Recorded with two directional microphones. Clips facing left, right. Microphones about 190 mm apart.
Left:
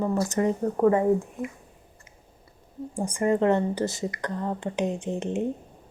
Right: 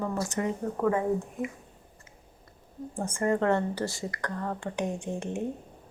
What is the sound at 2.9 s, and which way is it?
A woman's voice, 15° left (ahead or behind).